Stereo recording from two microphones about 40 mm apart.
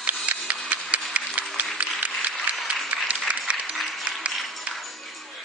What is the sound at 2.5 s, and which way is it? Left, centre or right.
Applause, right.